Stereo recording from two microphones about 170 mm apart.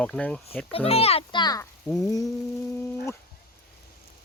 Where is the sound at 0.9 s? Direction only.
35° left (ahead or behind).